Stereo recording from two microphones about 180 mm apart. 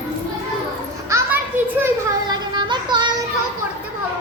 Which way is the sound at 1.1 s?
10° right (ahead or behind).